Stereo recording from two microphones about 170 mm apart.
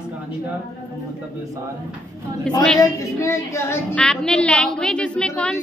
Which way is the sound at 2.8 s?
20° left (ahead or behind).